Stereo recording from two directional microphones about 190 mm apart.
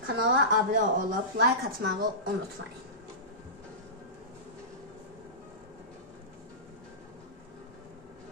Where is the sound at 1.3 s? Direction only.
55° right (ahead or behind).